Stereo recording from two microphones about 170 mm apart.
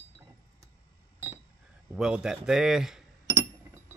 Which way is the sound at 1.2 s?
20° right (ahead or behind).